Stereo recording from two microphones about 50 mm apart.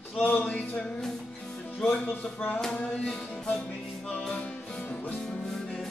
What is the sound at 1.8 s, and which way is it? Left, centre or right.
Speech, centre.